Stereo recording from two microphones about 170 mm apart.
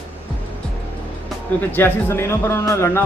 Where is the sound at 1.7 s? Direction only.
15° left (ahead or behind).